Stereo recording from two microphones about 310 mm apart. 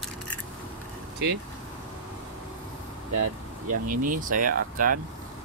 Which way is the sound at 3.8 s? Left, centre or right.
Right.